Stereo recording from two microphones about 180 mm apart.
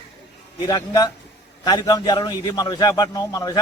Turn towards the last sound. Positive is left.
turn(degrees=20)  # may be behind; listen again after turning